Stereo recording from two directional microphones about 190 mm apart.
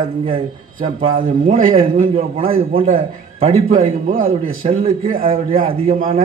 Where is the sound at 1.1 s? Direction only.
45° right (ahead or behind).